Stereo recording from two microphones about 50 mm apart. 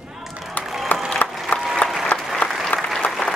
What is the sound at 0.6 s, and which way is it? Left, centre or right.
Applause, left.